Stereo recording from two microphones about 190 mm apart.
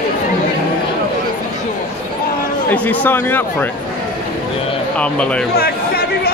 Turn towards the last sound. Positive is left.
turn(degrees=55)  # may be behind; listen again after turning